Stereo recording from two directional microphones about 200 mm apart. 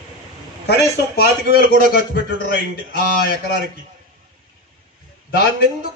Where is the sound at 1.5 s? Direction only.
50° left (ahead or behind).